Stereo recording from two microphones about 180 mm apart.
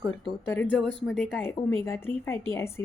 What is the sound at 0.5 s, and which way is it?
Speech, 10° left (ahead or behind).